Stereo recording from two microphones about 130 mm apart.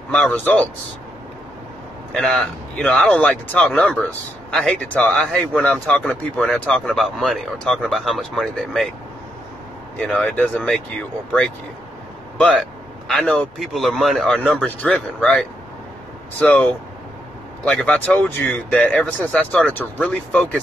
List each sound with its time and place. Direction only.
0.1 s speech: 10° left (ahead or behind)
2.1 s speech: 5° left (ahead or behind)
9.9 s speech: 10° left (ahead or behind)
17.6 s speech: 5° left (ahead or behind)